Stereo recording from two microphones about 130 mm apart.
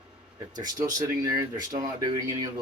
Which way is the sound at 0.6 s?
30° right (ahead or behind).